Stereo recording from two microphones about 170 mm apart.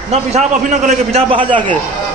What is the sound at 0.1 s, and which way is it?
A man's voice, 40° right (ahead or behind).